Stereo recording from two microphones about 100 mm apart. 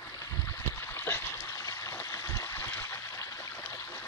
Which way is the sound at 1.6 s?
30° left (ahead or behind).